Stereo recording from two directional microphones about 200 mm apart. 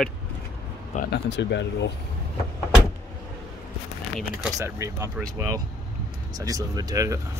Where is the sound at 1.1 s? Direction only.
60° left (ahead or behind).